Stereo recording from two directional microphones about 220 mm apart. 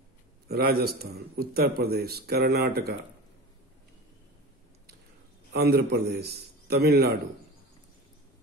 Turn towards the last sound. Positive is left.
turn(degrees=-45)  # may be behind; listen again after turning